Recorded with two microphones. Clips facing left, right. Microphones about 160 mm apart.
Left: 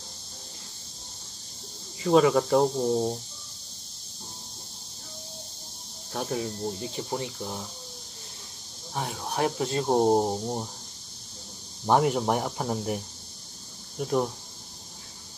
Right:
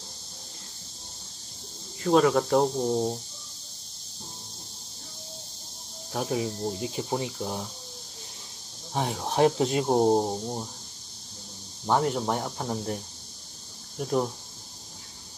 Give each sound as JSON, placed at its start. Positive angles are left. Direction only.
{"t": 2.0, "sound": "speech", "side_deg": 0}
{"t": 6.1, "sound": "speech", "side_deg": -10}
{"t": 8.9, "sound": "speech", "side_deg": -20}
{"t": 9.8, "sound": "speech", "side_deg": 5}
{"t": 10.2, "sound": "speech", "side_deg": 15}
{"t": 11.9, "sound": "speech", "side_deg": 10}